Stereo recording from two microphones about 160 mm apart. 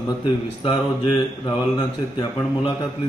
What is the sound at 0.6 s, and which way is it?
Speech, 30° left (ahead or behind).